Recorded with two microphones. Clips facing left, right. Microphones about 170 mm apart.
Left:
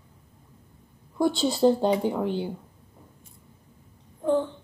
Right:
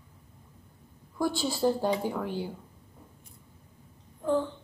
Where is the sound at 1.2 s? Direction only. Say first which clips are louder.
Left 6 dB; 25° left (ahead or behind).